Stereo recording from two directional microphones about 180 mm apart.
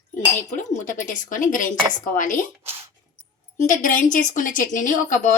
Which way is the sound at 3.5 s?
45° left (ahead or behind).